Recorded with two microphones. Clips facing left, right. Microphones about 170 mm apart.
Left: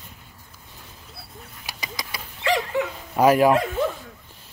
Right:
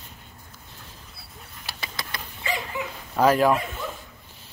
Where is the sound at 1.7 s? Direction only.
10° left (ahead or behind).